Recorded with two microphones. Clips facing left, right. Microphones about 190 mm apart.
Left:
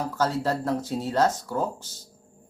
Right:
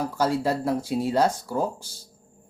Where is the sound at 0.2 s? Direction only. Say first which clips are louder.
Right 2 dB; 10° right (ahead or behind).